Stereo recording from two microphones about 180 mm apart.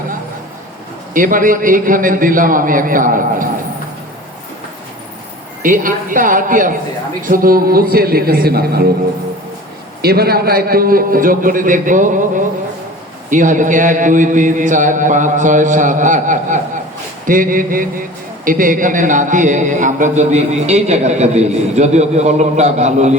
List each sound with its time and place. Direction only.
1.1 s mantra: 50° right (ahead or behind)
5.6 s mantra: 50° right (ahead or behind)
7.2 s a man's voice: 50° right (ahead or behind)
10.0 s mantra: 60° right (ahead or behind)
18.4 s a man's voice: 50° right (ahead or behind)